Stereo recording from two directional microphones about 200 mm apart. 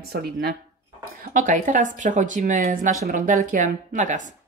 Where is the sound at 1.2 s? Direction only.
40° right (ahead or behind).